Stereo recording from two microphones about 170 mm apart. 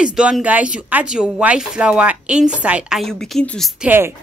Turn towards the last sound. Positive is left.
turn(degrees=-10)  # may be behind; listen again after turning